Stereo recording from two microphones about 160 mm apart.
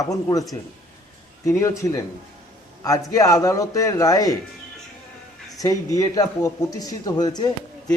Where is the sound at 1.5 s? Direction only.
20° left (ahead or behind).